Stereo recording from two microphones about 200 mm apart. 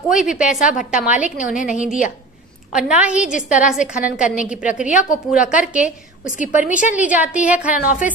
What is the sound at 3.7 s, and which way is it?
A woman's voice, 5° right (ahead or behind).